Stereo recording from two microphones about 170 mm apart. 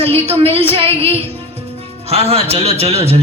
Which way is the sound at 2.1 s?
35° right (ahead or behind).